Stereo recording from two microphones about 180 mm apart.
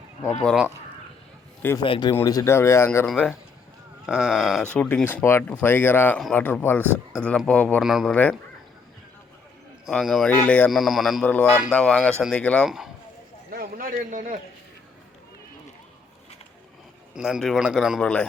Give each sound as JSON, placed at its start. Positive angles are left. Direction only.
{"t": 0.4, "sound": "speech", "side_deg": -5}
{"t": 1.8, "sound": "speech", "side_deg": 25}
{"t": 3.1, "sound": "speech", "side_deg": 0}
{"t": 4.7, "sound": "speech", "side_deg": 10}
{"t": 7.9, "sound": "speech", "side_deg": -5}
{"t": 9.8, "sound": "speech", "side_deg": 0}
{"t": 11.4, "sound": "speech", "side_deg": -10}
{"t": 11.7, "sound": "speech", "side_deg": 5}
{"t": 13.5, "sound": "a sound", "side_deg": -55}
{"t": 17.2, "sound": "speech", "side_deg": -5}